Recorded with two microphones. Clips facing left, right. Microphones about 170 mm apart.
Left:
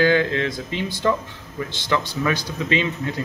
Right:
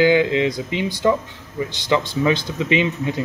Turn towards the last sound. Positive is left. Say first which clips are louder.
# right 3 dB
turn(degrees=-15)  # may be behind; listen again after turning